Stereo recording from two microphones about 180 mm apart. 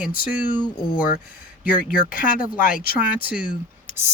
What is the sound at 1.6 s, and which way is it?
Speech, 50° left (ahead or behind).